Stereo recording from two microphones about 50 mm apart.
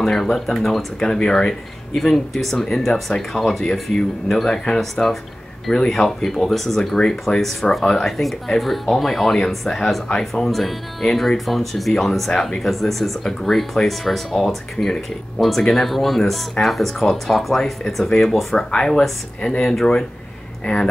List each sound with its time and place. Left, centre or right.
0.0 s speech: centre
12.6 s speech: centre
17.6 s speech: centre
18.6 s speech: centre
20.6 s speech: centre